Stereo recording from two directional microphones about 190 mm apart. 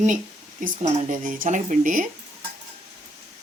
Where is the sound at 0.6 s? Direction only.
45° right (ahead or behind).